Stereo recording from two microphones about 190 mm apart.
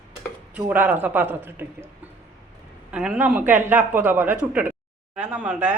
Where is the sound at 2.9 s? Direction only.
5° right (ahead or behind).